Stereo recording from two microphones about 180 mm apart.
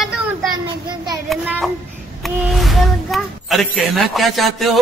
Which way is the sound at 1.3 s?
Centre (ahead or behind).